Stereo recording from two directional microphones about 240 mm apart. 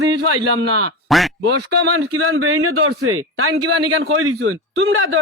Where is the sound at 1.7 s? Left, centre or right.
Right.